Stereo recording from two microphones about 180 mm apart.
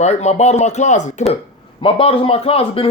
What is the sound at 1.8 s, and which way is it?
Speech, 30° left (ahead or behind).